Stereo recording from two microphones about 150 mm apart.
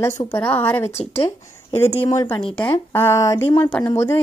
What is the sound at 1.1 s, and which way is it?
Speech, 40° left (ahead or behind).